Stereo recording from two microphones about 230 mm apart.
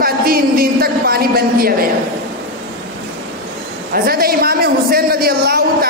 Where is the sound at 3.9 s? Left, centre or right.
Right.